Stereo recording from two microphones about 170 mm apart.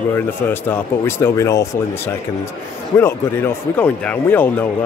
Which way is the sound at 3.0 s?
15° left (ahead or behind).